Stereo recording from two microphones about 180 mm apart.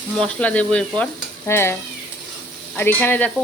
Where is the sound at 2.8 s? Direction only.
10° left (ahead or behind).